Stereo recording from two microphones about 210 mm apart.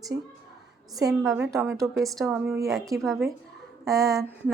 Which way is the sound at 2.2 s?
10° right (ahead or behind).